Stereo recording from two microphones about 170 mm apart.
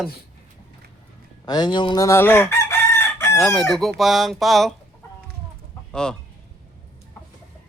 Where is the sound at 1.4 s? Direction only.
25° left (ahead or behind).